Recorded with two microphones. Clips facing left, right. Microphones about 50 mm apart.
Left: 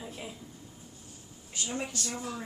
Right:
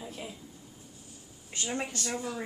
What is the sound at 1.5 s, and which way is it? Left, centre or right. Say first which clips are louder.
Speech: right 1 dB; right.